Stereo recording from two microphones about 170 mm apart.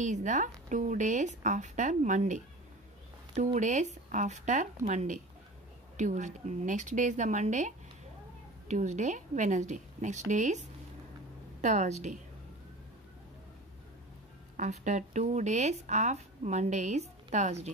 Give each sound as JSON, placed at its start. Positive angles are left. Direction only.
{"t": 0.0, "sound": "speech", "side_deg": -45}
{"t": 14.6, "sound": "speech", "side_deg": -45}